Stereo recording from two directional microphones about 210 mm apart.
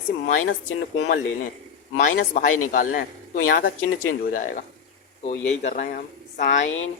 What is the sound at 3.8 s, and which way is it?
Speech, 85° left.